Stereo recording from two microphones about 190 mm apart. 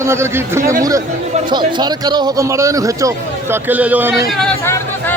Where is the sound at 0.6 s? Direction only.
45° right (ahead or behind).